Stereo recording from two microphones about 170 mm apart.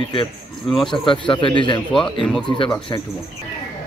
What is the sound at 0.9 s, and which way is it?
Speech, 30° left (ahead or behind).